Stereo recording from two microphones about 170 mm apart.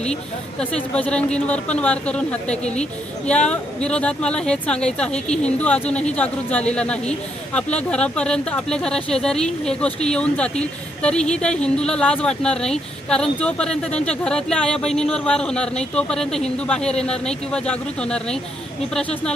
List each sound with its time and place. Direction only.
0.6 s speech: 5° left (ahead or behind)